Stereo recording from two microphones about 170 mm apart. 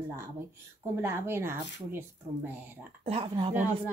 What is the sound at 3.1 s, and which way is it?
Speech, 35° right (ahead or behind).